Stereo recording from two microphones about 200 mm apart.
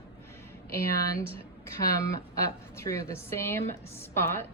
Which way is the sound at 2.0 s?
15° left (ahead or behind).